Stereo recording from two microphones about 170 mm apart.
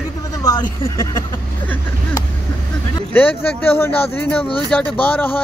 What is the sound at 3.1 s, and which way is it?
Speech, 10° left (ahead or behind).